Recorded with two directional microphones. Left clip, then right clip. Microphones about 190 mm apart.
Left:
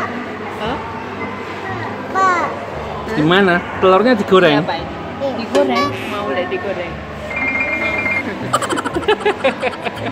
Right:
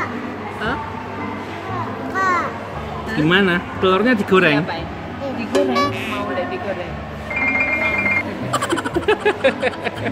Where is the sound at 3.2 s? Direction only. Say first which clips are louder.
Left 3 dB; 10° right (ahead or behind).